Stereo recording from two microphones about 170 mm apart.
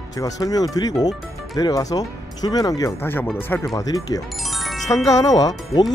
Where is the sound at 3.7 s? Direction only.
20° left (ahead or behind).